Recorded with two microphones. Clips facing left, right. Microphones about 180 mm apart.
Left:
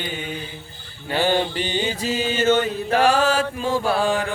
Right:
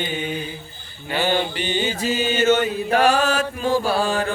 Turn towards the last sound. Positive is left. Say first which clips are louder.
# even
turn(degrees=15)  # may be behind; listen again after turning